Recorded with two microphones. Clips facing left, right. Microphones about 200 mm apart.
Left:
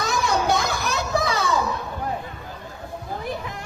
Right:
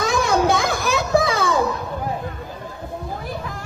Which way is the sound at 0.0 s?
50° right (ahead or behind).